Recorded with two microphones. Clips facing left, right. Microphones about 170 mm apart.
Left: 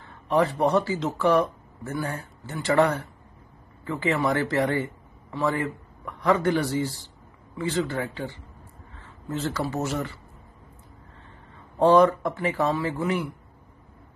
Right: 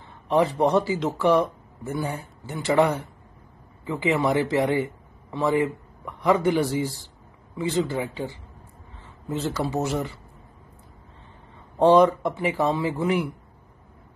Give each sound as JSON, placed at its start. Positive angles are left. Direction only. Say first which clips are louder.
{"t": 0.0, "sound": "a man's voice", "louder": "right 1 dB", "side_deg": -20}
{"t": 11.8, "sound": "a man's voice", "louder": "right 1 dB", "side_deg": -15}